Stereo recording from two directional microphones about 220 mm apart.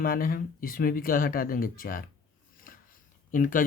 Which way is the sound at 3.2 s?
35° left (ahead or behind).